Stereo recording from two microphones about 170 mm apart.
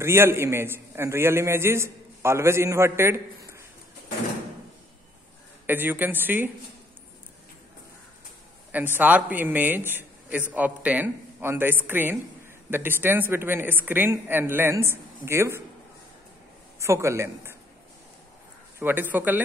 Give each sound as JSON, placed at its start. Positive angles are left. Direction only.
{"t": 0.0, "sound": "a man's voice", "side_deg": -15}
{"t": 5.7, "sound": "a man's voice", "side_deg": -10}
{"t": 8.9, "sound": "a man's voice", "side_deg": -10}
{"t": 16.8, "sound": "a man's voice", "side_deg": -15}
{"t": 18.8, "sound": "a man's voice", "side_deg": -10}